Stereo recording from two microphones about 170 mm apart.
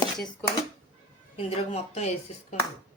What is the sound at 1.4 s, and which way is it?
Speech, 35° left (ahead or behind).